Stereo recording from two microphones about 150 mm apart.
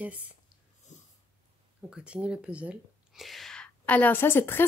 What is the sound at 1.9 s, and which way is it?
Speech, 5° right (ahead or behind).